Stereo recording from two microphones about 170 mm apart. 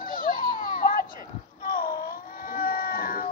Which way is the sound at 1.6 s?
60° left (ahead or behind).